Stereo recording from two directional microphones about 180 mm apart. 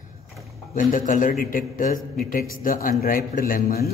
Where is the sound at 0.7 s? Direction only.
50° left (ahead or behind).